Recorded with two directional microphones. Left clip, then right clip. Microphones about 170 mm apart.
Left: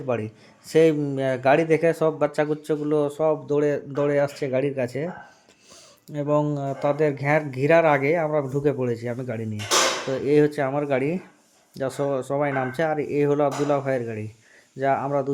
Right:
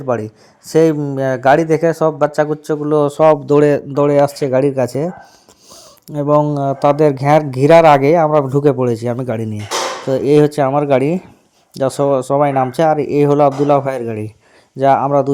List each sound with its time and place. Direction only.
0.0 s speech: 30° right (ahead or behind)
3.0 s speech: 50° right (ahead or behind)
3.9 s speech: 40° right (ahead or behind)
6.1 s speech: 40° right (ahead or behind); by 9.6 s 55° right (ahead or behind)
10.1 s speech: 45° right (ahead or behind)